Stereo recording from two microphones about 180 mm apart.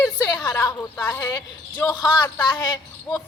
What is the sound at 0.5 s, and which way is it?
Speech, 10° left (ahead or behind).